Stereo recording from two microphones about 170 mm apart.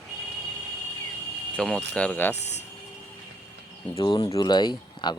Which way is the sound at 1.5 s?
5° left (ahead or behind).